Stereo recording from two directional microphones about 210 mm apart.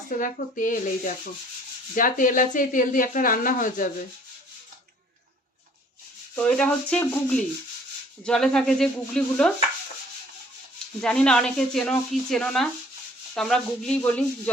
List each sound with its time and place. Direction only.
0.1 s speech: 40° left (ahead or behind)
6.3 s rub: 5° left (ahead or behind)
8.2 s speech: 5° left (ahead or behind)
11.0 s speech: 5° left (ahead or behind)